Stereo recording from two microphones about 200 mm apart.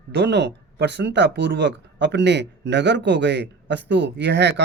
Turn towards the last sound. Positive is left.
turn(degrees=-60)  # may be behind; listen again after turning